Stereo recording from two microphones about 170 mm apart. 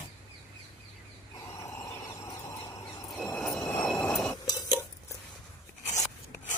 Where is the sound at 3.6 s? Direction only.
15° left (ahead or behind).